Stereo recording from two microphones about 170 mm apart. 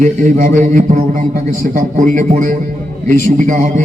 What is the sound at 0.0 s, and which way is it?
A man's voice, 45° right (ahead or behind).